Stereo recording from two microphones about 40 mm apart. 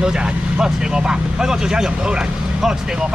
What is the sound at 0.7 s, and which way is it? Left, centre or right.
A man's voice, right.